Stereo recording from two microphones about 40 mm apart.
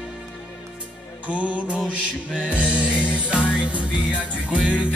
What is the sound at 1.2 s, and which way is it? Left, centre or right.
Music, right.